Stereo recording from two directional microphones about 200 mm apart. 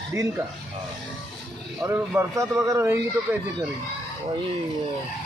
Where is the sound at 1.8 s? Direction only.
15° right (ahead or behind).